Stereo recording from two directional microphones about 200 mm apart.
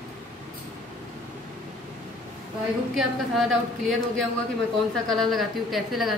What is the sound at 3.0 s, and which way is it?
Speech, centre (ahead or behind).